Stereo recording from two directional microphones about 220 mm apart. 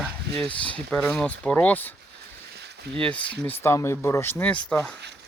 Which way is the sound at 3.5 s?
10° left (ahead or behind).